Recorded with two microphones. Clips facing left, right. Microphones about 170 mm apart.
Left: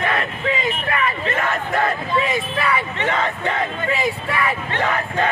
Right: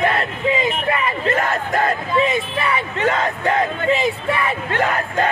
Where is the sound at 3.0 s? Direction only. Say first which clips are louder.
Right 2 dB; 40° right (ahead or behind).